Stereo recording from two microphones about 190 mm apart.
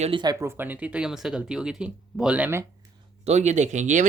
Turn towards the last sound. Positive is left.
turn(degrees=-40)  # may be behind; listen again after turning